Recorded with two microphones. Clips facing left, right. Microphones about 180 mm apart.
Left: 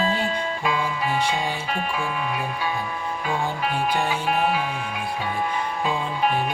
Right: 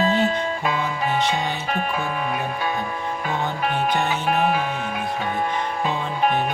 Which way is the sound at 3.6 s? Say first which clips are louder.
Right 2 dB; 45° right (ahead or behind).